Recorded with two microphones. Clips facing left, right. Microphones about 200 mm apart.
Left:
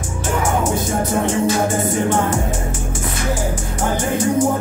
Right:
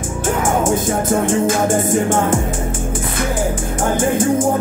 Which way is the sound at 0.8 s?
50° right (ahead or behind).